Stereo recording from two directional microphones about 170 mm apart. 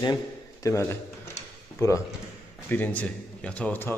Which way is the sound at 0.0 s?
20° left (ahead or behind).